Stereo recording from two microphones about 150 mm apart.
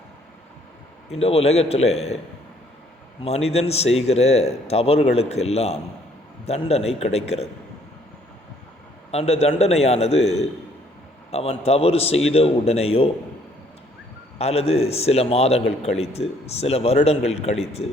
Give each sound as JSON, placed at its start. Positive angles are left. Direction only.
{"t": 1.1, "sound": "a man's voice", "side_deg": 45}
{"t": 3.2, "sound": "a man's voice", "side_deg": 45}
{"t": 9.1, "sound": "a man's voice", "side_deg": 45}
{"t": 14.3, "sound": "a man's voice", "side_deg": 45}